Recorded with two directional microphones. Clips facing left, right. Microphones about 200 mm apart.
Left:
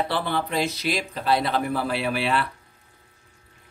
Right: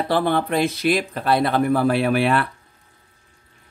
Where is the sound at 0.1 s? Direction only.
50° right (ahead or behind).